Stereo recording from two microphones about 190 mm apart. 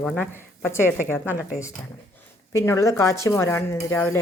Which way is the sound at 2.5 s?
15° left (ahead or behind).